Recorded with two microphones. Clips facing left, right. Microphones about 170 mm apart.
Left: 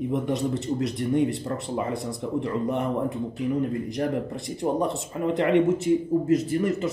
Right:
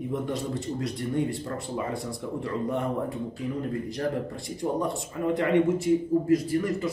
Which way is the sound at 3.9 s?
20° left (ahead or behind).